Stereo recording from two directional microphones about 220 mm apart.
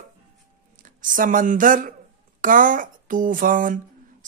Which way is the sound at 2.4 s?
35° right (ahead or behind).